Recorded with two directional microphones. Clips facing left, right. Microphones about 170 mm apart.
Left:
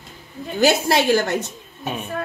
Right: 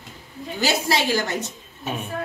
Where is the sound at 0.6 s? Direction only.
55° left (ahead or behind).